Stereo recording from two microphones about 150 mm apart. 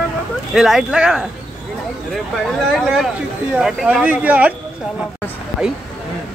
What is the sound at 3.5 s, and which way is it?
Speech, 5° right (ahead or behind).